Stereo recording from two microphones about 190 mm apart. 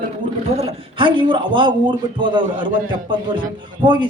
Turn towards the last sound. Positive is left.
turn(degrees=-25)  # may be behind; listen again after turning